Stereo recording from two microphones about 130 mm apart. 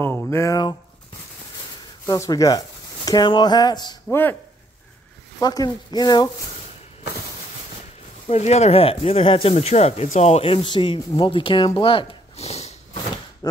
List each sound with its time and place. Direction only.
0.3 s speech: 20° left (ahead or behind)
2.0 s speech: 25° left (ahead or behind)
4.1 s speech: 15° left (ahead or behind)
5.4 s speech: 30° left (ahead or behind)
8.3 s speech: 55° left (ahead or behind)
13.4 s speech: 30° left (ahead or behind)